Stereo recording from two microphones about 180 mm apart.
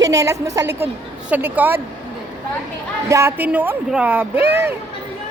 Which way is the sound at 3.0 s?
15° right (ahead or behind).